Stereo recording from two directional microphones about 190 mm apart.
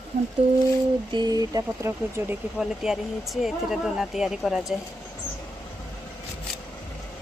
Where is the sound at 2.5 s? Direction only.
Centre (ahead or behind).